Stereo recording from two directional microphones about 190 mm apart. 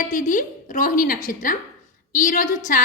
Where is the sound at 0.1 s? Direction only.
40° left (ahead or behind).